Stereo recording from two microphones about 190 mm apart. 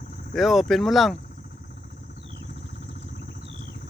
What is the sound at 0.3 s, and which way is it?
Speech, centre (ahead or behind).